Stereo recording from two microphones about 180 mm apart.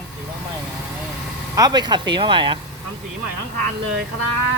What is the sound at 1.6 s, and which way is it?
Speech, 20° right (ahead or behind).